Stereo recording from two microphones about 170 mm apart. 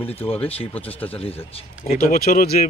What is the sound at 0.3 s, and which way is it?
Speech, 35° left (ahead or behind).